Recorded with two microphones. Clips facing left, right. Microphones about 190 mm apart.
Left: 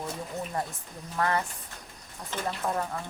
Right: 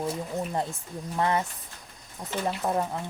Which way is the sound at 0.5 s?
20° right (ahead or behind).